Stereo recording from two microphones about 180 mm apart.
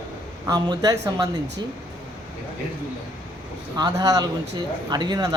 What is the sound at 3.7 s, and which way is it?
Speech, 20° right (ahead or behind).